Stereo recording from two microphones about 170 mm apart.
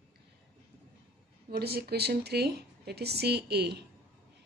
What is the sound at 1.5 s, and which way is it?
Speech, 65° right (ahead or behind).